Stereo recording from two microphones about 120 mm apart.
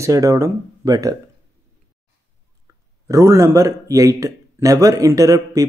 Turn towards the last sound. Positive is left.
turn(degrees=-30)  # may be behind; listen again after turning